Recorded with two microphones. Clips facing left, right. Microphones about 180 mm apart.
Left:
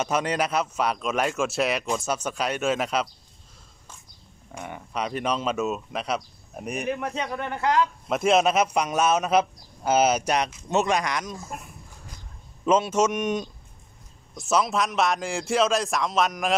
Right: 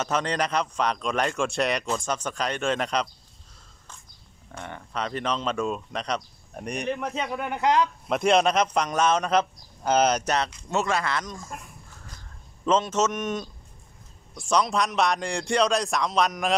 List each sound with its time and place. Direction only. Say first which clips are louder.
0.0 s a man's voice: left 1 dB; 10° left (ahead or behind)
4.5 s a man's voice: left 1 dB; 10° left (ahead or behind)
7.5 s a man's voice: right 1 dB; 20° right (ahead or behind)
8.1 s a man's voice: even; centre (ahead or behind)
12.6 s a man's voice: left 2 dB; 10° left (ahead or behind)